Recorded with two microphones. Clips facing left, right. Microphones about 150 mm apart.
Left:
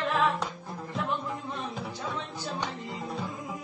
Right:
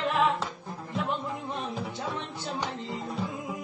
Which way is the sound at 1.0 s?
20° right (ahead or behind).